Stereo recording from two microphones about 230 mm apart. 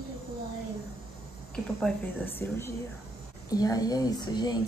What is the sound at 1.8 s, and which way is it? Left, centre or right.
Speech, centre.